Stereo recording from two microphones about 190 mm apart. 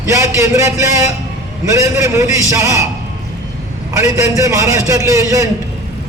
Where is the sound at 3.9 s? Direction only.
15° right (ahead or behind).